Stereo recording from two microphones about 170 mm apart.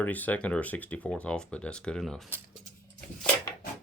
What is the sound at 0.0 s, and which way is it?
Speech, 10° left (ahead or behind).